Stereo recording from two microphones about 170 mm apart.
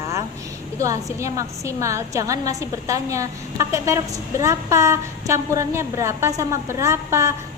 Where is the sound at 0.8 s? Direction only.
20° right (ahead or behind).